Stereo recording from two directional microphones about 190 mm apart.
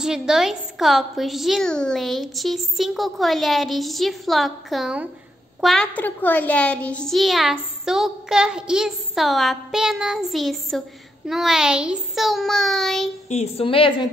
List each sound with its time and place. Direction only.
0.0 s a child's voice: 5° right (ahead or behind)
13.3 s a woman's voice: 35° left (ahead or behind)